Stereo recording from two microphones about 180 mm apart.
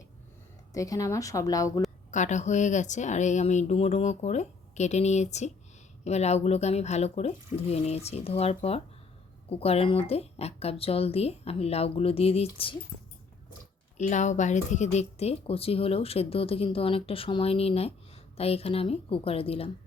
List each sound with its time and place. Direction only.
0.7 s a woman's voice: 20° left (ahead or behind)
2.0 s speech: 40° left (ahead or behind)
14.1 s speech: 40° left (ahead or behind)